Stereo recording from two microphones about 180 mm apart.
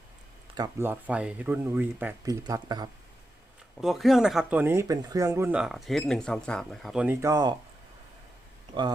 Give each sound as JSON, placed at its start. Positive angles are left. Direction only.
{"t": 0.5, "sound": "speech", "side_deg": -20}
{"t": 0.9, "sound": "speech", "side_deg": -10}
{"t": 3.8, "sound": "speech", "side_deg": 0}
{"t": 8.7, "sound": "speech", "side_deg": -25}